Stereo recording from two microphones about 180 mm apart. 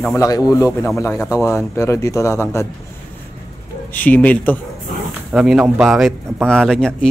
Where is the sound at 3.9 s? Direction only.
10° left (ahead or behind).